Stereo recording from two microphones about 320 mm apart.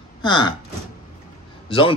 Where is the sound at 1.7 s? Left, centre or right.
Centre.